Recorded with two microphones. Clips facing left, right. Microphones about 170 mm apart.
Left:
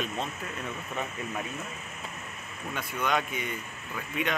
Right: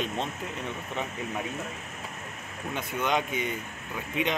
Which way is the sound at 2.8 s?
20° right (ahead or behind).